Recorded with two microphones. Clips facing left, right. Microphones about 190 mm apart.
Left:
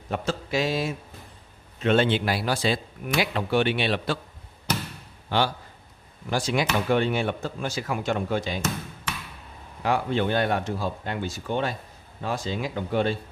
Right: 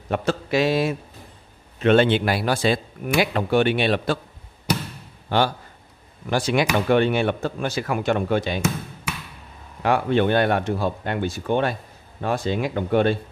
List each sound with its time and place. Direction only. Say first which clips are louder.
0.1 s speech: right 5 dB; 65° right (ahead or behind); by 4.2 s 50° right (ahead or behind)
5.3 s speech: right 4 dB; 50° right (ahead or behind)
6.3 s speech: right 4 dB; 65° right (ahead or behind)
9.8 s speech: right 5 dB; 60° right (ahead or behind)